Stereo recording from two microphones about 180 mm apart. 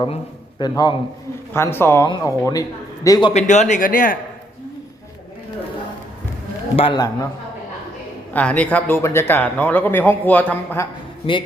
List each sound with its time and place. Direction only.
0.6 s speech: 25° left (ahead or behind)
1.5 s a man's voice: 15° left (ahead or behind)
3.3 s speech: 40° left (ahead or behind)
6.7 s speech: 25° left (ahead or behind)
8.3 s a man's voice: 10° left (ahead or behind)
11.3 s speech: 25° left (ahead or behind)